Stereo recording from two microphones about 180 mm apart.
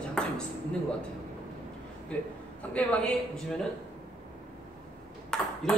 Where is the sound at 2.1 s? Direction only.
5° left (ahead or behind).